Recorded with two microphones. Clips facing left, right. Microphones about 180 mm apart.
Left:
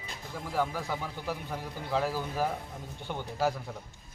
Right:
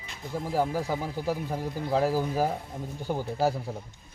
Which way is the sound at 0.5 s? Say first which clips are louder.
Right 4 dB; 40° right (ahead or behind).